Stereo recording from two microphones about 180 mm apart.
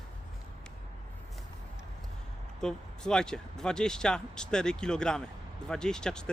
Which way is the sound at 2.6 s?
5° left (ahead or behind).